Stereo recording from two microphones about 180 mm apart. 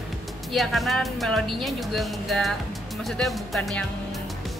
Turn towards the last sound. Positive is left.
turn(degrees=0)  # may be behind; listen again after turning